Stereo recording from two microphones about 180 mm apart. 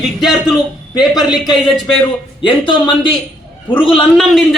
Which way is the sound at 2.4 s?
25° left (ahead or behind).